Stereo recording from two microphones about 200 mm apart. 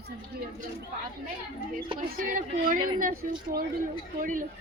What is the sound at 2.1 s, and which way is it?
Speech, 40° right (ahead or behind).